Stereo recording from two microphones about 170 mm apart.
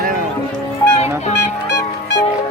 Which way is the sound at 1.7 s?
80° left.